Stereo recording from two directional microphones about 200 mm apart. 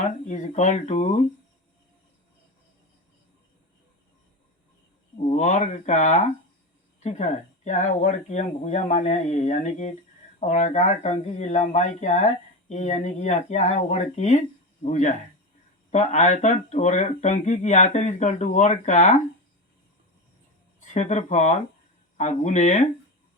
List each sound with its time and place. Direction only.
0.3 s speech: 35° left (ahead or behind)
5.3 s speech: 35° left (ahead or behind)
20.8 s speech: 35° left (ahead or behind)